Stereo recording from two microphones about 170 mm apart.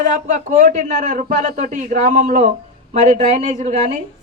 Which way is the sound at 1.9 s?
45° right (ahead or behind).